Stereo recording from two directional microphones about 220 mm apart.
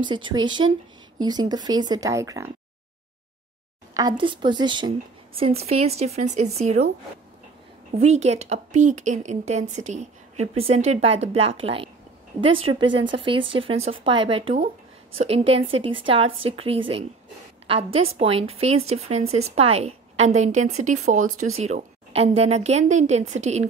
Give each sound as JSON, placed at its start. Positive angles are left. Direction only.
{"t": 0.0, "sound": "speech", "side_deg": -20}
{"t": 3.9, "sound": "speech", "side_deg": -20}
{"t": 8.0, "sound": "a woman's voice", "side_deg": -30}